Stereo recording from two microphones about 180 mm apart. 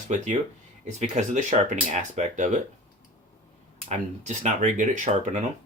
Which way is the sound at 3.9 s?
40° right (ahead or behind).